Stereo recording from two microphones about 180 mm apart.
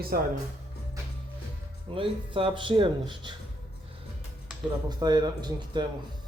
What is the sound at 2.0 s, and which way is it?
Speech, 30° right (ahead or behind).